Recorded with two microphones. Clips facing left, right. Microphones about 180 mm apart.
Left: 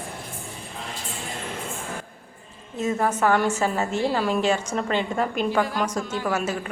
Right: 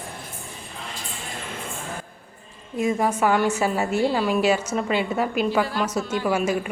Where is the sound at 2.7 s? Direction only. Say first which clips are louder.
Right 2 dB; 10° right (ahead or behind).